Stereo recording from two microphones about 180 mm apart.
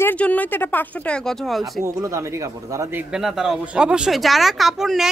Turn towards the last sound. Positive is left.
turn(degrees=0)  # may be behind; listen again after turning